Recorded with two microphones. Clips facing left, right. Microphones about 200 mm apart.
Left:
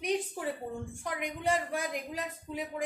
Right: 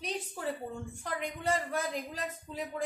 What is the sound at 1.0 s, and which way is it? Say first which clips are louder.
Speech: left 1 dB; 15° left (ahead or behind).